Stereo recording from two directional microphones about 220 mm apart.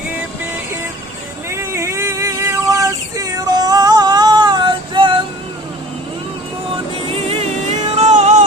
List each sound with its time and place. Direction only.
1.5 s child singing: 10° right (ahead or behind)
7.1 s music: 25° right (ahead or behind)